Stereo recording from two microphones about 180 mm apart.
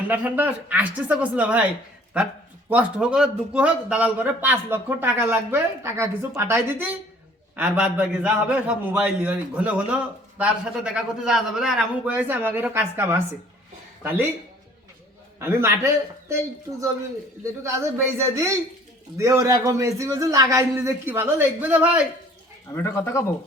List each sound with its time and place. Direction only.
0.1 s a man's voice: 10° right (ahead or behind)
2.6 s a man's voice: 5° right (ahead or behind)
15.4 s a man's voice: 15° right (ahead or behind)
17.4 s a man's voice: 15° right (ahead or behind)
22.7 s speech: 15° left (ahead or behind)